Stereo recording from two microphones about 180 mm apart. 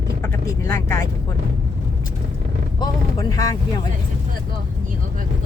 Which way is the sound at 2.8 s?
20° left (ahead or behind).